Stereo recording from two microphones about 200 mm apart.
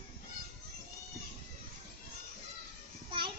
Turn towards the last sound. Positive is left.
turn(degrees=-25)  # may be behind; listen again after turning